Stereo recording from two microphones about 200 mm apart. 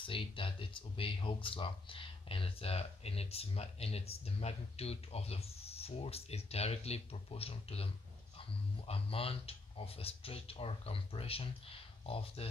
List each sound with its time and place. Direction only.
0.0 s speech: 25° left (ahead or behind)